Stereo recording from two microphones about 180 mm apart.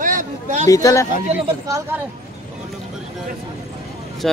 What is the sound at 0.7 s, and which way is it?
Speech, 20° left (ahead or behind).